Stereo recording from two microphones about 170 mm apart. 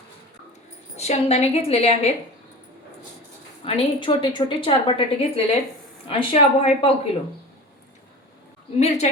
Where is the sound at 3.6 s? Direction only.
35° left (ahead or behind).